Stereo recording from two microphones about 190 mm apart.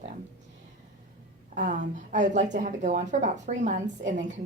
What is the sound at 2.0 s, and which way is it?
Speech, 40° right (ahead or behind).